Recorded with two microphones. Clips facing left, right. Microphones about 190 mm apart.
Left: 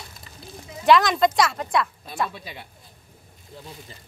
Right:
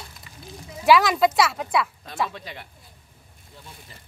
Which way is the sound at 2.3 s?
10° left (ahead or behind).